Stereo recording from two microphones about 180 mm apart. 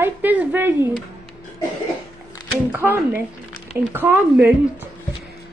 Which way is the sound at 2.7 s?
10° right (ahead or behind).